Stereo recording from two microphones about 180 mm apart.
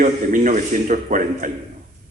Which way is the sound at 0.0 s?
45° right (ahead or behind).